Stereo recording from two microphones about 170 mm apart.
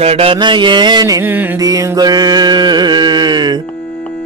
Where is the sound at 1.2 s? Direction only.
10° right (ahead or behind).